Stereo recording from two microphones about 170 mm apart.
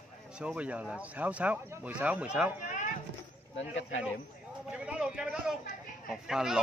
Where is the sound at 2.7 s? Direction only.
50° left (ahead or behind).